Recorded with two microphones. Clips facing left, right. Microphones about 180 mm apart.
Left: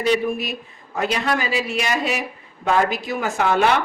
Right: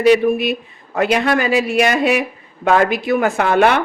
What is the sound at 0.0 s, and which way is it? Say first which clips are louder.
Speech: right 8 dB; 65° right (ahead or behind).